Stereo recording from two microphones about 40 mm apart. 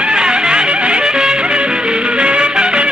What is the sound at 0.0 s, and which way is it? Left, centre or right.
Music, right.